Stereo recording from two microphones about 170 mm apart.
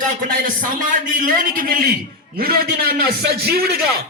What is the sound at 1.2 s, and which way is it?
A man's voice, 60° right (ahead or behind).